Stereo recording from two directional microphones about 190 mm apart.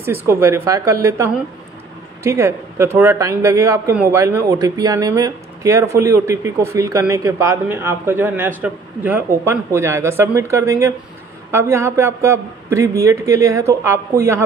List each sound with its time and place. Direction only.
0.3 s speech: 15° right (ahead or behind)